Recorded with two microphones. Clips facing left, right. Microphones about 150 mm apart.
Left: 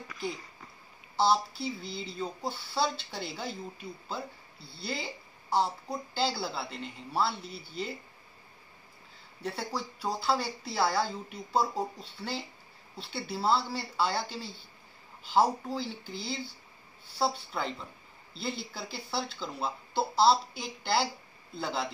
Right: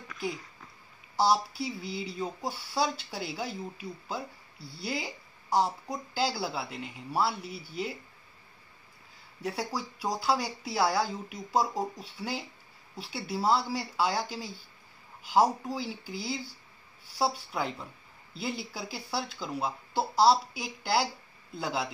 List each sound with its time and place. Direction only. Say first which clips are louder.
1.1 s speech: right 1 dB; 10° right (ahead or behind)
9.4 s speech: right 2 dB; 10° right (ahead or behind)